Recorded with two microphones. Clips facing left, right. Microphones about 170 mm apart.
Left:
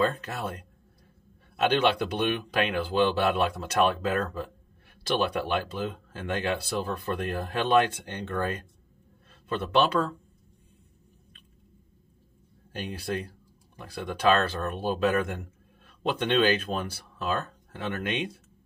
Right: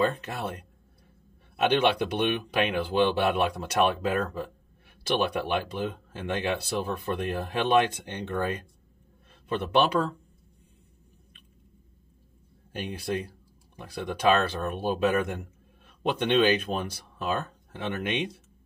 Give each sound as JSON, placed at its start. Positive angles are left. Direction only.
{"t": 1.6, "sound": "speech", "side_deg": -15}
{"t": 12.7, "sound": "speech", "side_deg": -10}